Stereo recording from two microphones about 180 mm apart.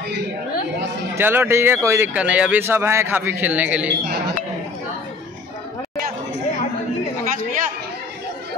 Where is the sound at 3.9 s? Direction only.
65° right (ahead or behind).